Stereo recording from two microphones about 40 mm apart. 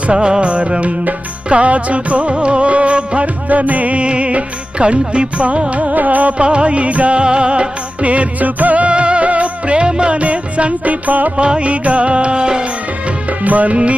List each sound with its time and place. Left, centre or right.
0.1 s music: right
5.9 s music: right
11.3 s music: right
13.4 s music: right